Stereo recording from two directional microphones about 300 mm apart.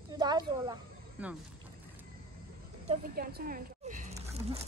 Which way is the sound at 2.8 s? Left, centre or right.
Right.